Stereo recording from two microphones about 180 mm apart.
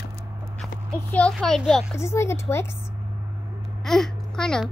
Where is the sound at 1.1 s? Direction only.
5° left (ahead or behind).